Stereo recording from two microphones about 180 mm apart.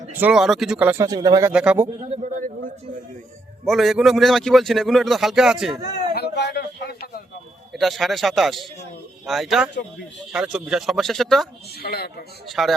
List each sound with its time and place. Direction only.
0.1 s a man's voice: 10° right (ahead or behind)
1.0 s speech: 20° right (ahead or behind)
1.5 s a man's voice: 5° right (ahead or behind)
2.0 s a man's voice: 35° right (ahead or behind)
3.7 s a man's voice: centre (ahead or behind)
6.1 s a sound: 65° left (ahead or behind)
7.7 s a man's voice: centre (ahead or behind)
11.8 s speech: 60° left (ahead or behind)
12.5 s a man's voice: centre (ahead or behind)